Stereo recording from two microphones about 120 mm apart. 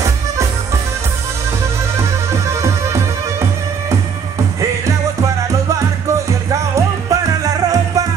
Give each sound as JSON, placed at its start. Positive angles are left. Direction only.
{"t": 2.4, "sound": "music", "side_deg": -25}
{"t": 6.5, "sound": "music", "side_deg": -25}